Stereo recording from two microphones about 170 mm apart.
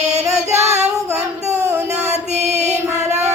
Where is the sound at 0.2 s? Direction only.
40° right (ahead or behind).